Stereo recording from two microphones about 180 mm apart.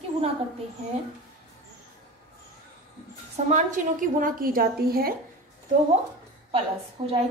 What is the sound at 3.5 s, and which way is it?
A woman's voice, 45° right (ahead or behind).